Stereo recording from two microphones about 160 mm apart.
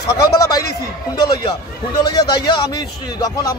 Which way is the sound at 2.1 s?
30° left (ahead or behind).